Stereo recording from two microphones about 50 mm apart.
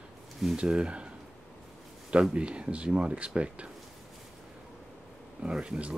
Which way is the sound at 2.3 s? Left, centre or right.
Right.